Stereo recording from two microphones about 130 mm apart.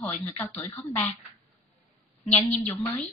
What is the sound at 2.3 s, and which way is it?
Speech, 15° left (ahead or behind).